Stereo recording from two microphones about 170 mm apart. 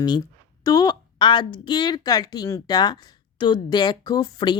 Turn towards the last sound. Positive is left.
turn(degrees=25)  # may be behind; listen again after turning